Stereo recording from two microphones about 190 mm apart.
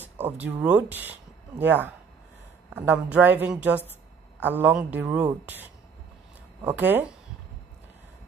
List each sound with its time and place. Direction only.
0.0 s speech: 10° right (ahead or behind)